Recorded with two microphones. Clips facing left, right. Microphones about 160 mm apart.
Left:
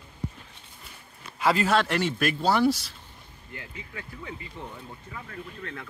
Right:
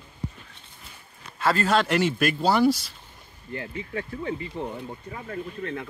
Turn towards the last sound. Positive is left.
turn(degrees=-35)  # may be behind; listen again after turning